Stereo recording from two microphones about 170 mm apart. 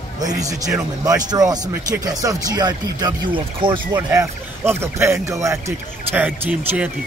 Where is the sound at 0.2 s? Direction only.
20° right (ahead or behind).